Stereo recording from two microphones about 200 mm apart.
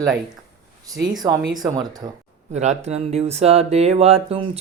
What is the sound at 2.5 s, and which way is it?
Speech, 35° right (ahead or behind).